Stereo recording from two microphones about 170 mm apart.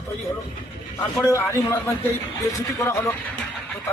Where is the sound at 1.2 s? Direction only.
15° left (ahead or behind).